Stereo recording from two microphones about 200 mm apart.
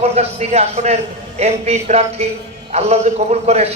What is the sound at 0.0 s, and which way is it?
A man's voice, 30° right (ahead or behind).